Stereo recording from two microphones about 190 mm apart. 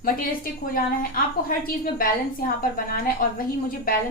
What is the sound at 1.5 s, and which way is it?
A woman's voice, 50° left (ahead or behind).